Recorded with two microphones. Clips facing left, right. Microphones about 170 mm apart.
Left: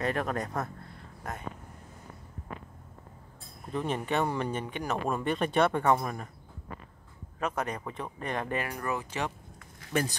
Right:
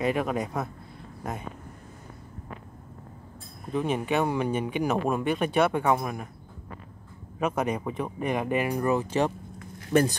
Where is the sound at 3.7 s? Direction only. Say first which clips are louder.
Right 4 dB; 5° right (ahead or behind).